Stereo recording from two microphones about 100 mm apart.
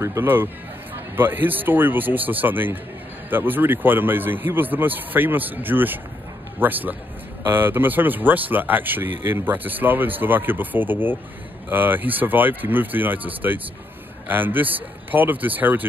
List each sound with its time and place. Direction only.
0.0 s speech: 25° right (ahead or behind)